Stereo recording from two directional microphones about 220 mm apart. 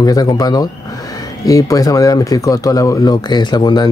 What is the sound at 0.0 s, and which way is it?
Speech, 15° left (ahead or behind).